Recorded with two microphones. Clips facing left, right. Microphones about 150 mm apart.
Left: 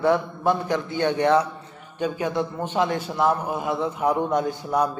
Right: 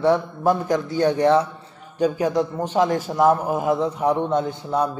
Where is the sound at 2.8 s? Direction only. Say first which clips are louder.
Right 4 dB; 40° right (ahead or behind).